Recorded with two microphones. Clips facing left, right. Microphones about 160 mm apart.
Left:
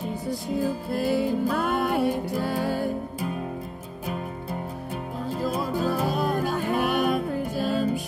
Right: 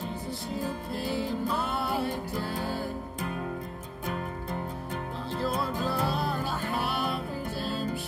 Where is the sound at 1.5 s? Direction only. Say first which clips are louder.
Left 6 dB; 60° left (ahead or behind).